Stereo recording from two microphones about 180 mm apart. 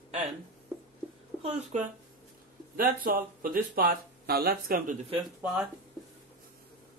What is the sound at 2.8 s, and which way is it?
Speech, 55° right (ahead or behind).